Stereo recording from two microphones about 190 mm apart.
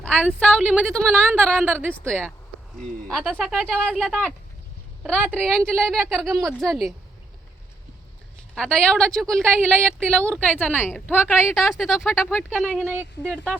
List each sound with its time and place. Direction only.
0.0 s a sound: 5° left (ahead or behind)
0.3 s a woman's voice: 5° left (ahead or behind)
8.5 s a woman's voice: 5° left (ahead or behind)
11.5 s a woman's voice: centre (ahead or behind)
12.4 s a woman's voice: 10° left (ahead or behind)
12.6 s speech: 5° right (ahead or behind)